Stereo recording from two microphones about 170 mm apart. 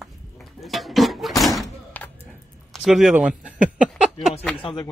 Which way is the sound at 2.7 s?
Centre (ahead or behind).